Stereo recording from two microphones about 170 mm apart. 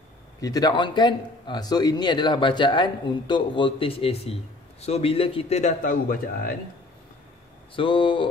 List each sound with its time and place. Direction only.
0.4 s a man's voice: 20° left (ahead or behind); by 6.5 s 55° left (ahead or behind)
7.7 s a man's voice: 30° left (ahead or behind)